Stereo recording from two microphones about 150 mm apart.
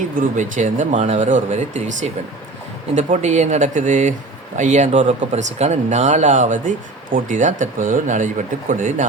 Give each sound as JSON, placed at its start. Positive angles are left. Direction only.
{"t": 0.3, "sound": "speech", "side_deg": -55}